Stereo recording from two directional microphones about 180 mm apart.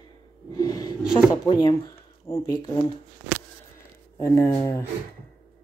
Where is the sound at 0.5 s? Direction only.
20° left (ahead or behind).